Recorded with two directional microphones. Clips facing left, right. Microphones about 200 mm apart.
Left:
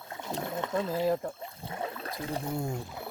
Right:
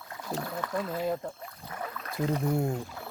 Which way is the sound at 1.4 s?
25° left (ahead or behind).